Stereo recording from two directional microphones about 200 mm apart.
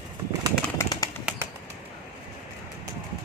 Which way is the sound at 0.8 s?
15° left (ahead or behind).